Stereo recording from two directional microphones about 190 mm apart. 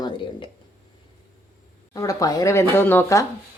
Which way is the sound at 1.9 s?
20° left (ahead or behind).